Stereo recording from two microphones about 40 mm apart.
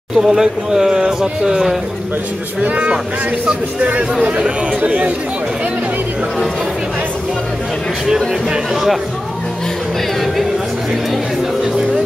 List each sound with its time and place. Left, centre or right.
0.1 s speech: centre
2.6 s speech: right